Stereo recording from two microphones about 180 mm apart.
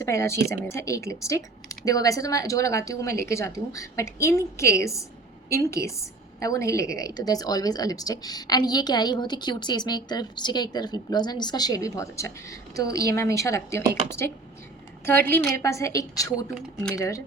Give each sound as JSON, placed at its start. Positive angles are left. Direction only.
{"t": 0.0, "sound": "a woman's voice", "side_deg": 15}
{"t": 15.0, "sound": "speech", "side_deg": 15}